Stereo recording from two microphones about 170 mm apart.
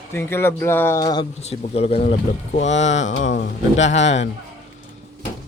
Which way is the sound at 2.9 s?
90° left.